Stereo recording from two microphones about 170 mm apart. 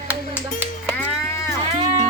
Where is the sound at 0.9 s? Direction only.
10° left (ahead or behind).